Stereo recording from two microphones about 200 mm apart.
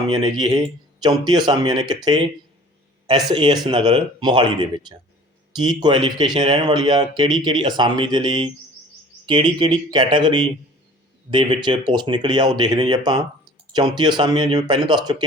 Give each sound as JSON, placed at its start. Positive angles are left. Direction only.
{"t": 0.1, "sound": "speech", "side_deg": -20}